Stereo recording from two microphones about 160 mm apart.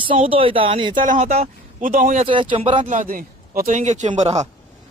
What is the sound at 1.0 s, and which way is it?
Speech, 45° right (ahead or behind).